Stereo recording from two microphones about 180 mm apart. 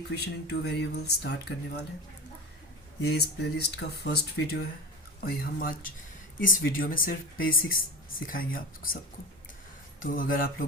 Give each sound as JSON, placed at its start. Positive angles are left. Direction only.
{"t": 0.1, "sound": "speech", "side_deg": 65}
{"t": 3.0, "sound": "speech", "side_deg": 65}
{"t": 10.0, "sound": "speech", "side_deg": 50}